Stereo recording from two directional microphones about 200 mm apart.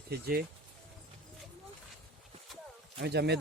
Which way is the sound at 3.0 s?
55° right (ahead or behind).